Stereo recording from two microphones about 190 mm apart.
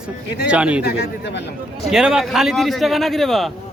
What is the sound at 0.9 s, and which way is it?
Speech, 65° left (ahead or behind).